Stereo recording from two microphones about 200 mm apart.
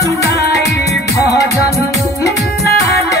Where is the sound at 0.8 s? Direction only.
15° left (ahead or behind).